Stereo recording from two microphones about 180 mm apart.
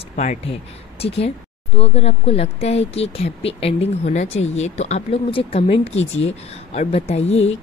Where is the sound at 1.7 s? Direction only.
35° left (ahead or behind).